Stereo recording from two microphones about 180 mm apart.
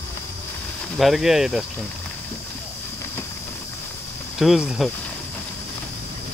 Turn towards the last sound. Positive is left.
turn(degrees=0)  # may be behind; listen again after turning